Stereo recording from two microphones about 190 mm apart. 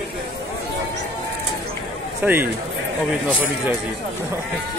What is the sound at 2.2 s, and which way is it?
Speech, 10° right (ahead or behind).